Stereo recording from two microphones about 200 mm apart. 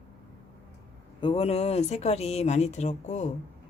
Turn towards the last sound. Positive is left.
turn(degrees=35)  # may be behind; listen again after turning